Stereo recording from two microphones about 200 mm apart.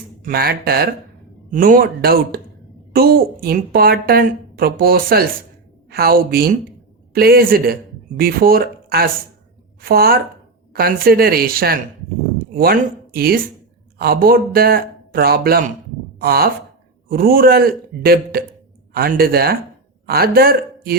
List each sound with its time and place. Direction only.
0.2 s a woman's voice: 50° right (ahead or behind)